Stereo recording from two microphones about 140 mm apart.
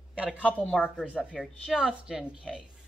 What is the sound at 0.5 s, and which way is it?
Speech, 10° left (ahead or behind).